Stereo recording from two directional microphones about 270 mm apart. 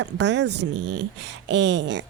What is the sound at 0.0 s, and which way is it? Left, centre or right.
Speech, right.